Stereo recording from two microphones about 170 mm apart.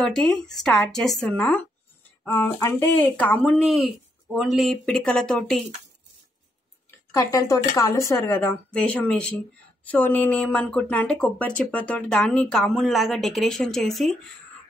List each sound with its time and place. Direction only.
0.0 s speech: 5° left (ahead or behind)
7.1 s speech: 20° left (ahead or behind); by 14.1 s centre (ahead or behind)